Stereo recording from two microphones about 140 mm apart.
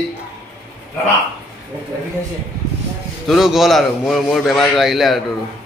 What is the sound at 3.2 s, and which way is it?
Speech, centre (ahead or behind).